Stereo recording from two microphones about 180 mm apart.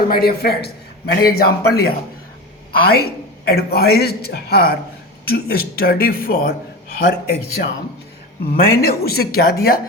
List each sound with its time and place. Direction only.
0.1 s a man's voice: 60° left (ahead or behind)
2.9 s a man's voice: 60° left (ahead or behind)